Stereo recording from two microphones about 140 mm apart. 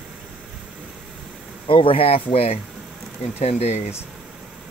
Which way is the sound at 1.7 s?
40° left (ahead or behind).